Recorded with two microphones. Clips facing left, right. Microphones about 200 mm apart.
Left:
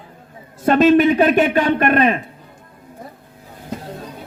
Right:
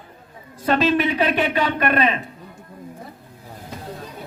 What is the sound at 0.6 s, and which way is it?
A man's voice, 50° left (ahead or behind).